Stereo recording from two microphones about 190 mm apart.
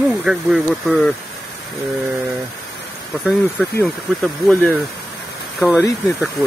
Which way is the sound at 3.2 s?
10° left (ahead or behind).